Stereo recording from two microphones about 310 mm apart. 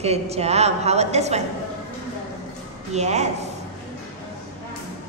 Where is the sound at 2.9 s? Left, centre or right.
Right.